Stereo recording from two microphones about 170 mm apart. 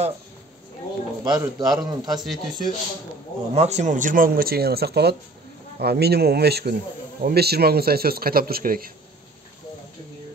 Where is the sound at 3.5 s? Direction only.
40° right (ahead or behind); by 8.9 s 60° right (ahead or behind).